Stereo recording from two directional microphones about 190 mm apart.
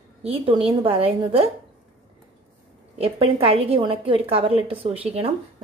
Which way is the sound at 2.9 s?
30° right (ahead or behind).